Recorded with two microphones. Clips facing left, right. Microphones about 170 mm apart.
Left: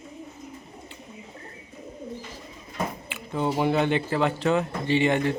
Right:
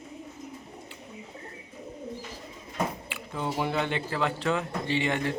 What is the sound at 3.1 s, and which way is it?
Speech, 20° left (ahead or behind).